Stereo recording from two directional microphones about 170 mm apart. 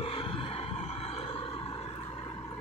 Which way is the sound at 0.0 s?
30° left (ahead or behind).